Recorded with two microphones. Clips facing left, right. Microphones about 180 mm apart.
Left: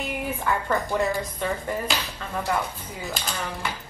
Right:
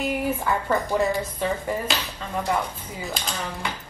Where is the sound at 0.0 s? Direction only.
10° right (ahead or behind).